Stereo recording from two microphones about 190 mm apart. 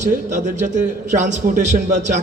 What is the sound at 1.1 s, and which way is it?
A man's voice, 40° right (ahead or behind).